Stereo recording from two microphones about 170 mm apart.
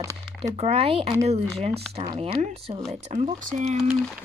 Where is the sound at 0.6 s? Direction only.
35° right (ahead or behind).